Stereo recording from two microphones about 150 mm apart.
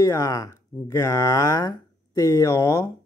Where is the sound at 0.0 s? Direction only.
20° left (ahead or behind).